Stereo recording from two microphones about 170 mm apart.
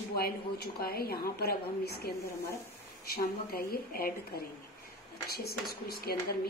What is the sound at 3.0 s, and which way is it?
A woman's voice, 65° left (ahead or behind).